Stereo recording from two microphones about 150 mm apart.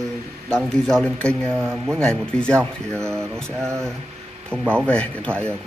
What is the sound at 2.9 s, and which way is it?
Speech, 20° right (ahead or behind).